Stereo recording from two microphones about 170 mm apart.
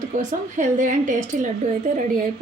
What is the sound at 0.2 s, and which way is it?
A woman's voice, 45° right (ahead or behind).